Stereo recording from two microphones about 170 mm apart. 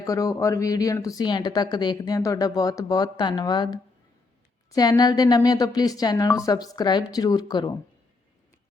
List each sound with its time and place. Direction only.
0.0 s speech: 20° left (ahead or behind)